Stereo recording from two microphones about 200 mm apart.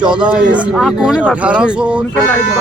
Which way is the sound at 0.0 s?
5° right (ahead or behind).